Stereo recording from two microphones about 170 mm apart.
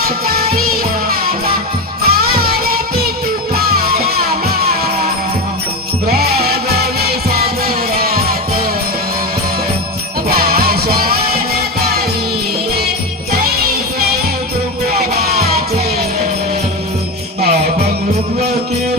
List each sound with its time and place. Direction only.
0.0 s music: 60° right (ahead or behind)
10.2 s music: 65° right (ahead or behind)
13.3 s jingle bell: 65° right (ahead or behind)
15.1 s music: 65° right (ahead or behind)